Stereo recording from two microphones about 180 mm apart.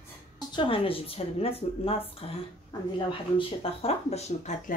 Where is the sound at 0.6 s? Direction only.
30° left (ahead or behind).